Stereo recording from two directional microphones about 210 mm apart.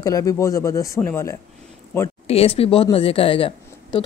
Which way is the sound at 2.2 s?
30° left (ahead or behind).